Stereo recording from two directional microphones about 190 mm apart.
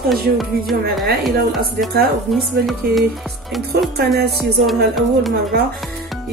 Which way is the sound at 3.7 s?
55° right (ahead or behind).